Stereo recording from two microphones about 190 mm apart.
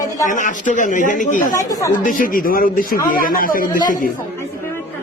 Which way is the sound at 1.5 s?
15° left (ahead or behind).